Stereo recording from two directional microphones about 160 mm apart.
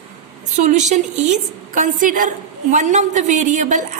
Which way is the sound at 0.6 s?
45° right (ahead or behind).